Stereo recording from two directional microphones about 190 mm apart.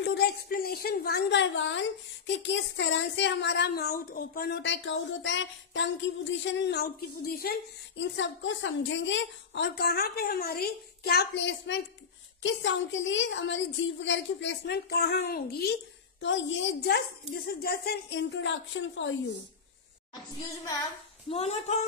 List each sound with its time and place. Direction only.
0.0 s a woman's voice: 60° left (ahead or behind)
8.0 s a woman's voice: 75° left (ahead or behind); by 15.7 s 55° left (ahead or behind)
16.2 s a woman's voice: 75° left (ahead or behind)
20.3 s singing: 20° left (ahead or behind)
21.3 s speech: 35° left (ahead or behind)